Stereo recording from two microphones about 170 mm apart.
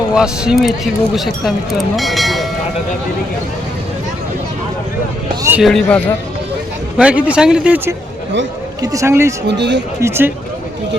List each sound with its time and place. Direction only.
0.1 s speech: 5° right (ahead or behind)
5.4 s music: 10° right (ahead or behind)
5.6 s speech: centre (ahead or behind)
8.8 s speech: 20° right (ahead or behind)
9.5 s speech: 90° right
10.0 s speech: 15° right (ahead or behind)